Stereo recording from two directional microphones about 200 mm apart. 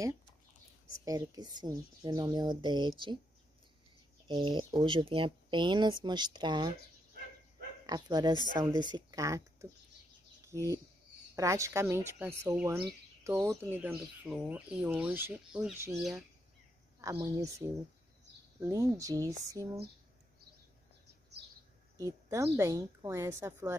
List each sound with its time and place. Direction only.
1.0 s speech: 20° right (ahead or behind)
4.3 s speech: 25° right (ahead or behind)
7.8 s speech: 20° right (ahead or behind)
17.0 s speech: 15° right (ahead or behind)
21.9 s speech: 15° right (ahead or behind)